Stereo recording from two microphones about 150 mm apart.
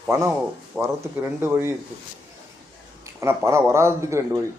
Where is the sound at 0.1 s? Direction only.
15° right (ahead or behind).